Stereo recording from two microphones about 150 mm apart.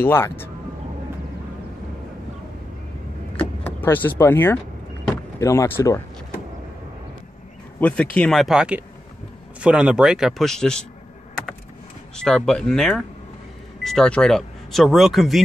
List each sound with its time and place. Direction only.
0.0 s speech: 15° left (ahead or behind)
3.3 s vehicle: 15° left (ahead or behind)
5.4 s speech: 20° left (ahead or behind)
7.8 s speech: 10° left (ahead or behind)
12.2 s speech: 5° left (ahead or behind)